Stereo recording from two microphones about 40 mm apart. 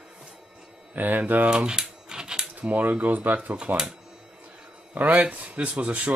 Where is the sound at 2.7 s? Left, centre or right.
Right.